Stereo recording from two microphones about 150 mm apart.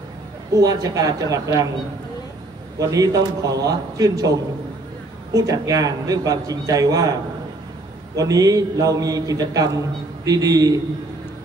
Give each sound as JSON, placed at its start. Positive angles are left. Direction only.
{"t": 0.6, "sound": "a man's voice", "side_deg": -25}
{"t": 2.8, "sound": "a man's voice", "side_deg": -25}
{"t": 8.2, "sound": "a man's voice", "side_deg": -25}